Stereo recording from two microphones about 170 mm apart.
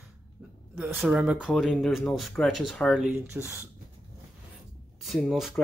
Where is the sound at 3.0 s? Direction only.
15° right (ahead or behind).